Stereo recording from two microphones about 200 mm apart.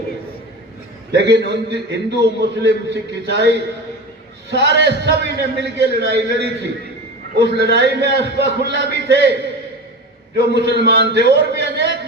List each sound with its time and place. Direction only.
1.1 s a man's voice: 55° right (ahead or behind)
10.3 s a man's voice: 55° right (ahead or behind)